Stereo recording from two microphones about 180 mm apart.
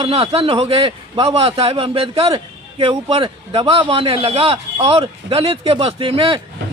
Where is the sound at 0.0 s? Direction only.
30° right (ahead or behind).